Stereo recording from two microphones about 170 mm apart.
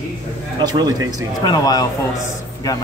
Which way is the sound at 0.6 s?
25° right (ahead or behind).